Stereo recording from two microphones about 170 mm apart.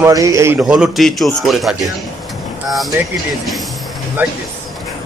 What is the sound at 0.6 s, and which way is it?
A man's voice, 5° right (ahead or behind).